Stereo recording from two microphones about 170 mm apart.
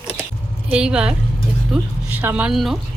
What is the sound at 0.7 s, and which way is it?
Speech, 5° right (ahead or behind).